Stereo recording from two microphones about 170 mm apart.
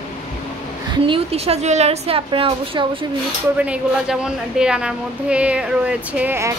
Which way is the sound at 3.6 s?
5° right (ahead or behind).